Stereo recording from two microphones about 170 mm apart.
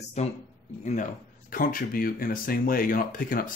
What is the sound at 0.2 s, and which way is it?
Speech, 40° left (ahead or behind).